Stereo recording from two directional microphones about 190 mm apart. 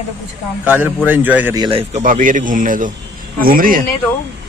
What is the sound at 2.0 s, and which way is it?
A man's voice, 45° right (ahead or behind).